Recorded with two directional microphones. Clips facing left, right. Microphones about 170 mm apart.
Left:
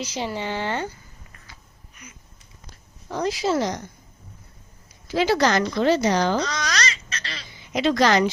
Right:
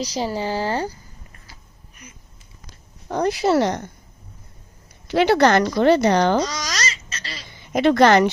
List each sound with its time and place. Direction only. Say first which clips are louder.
0.0 s speech: right 4 dB; 35° right (ahead or behind)
3.1 s speech: right 4 dB; 55° right (ahead or behind)
5.0 s speech: right 4 dB; 65° right (ahead or behind)
6.5 s babbling: left 1 dB; 5° right (ahead or behind)
7.5 s speech: right 5 dB; 55° right (ahead or behind)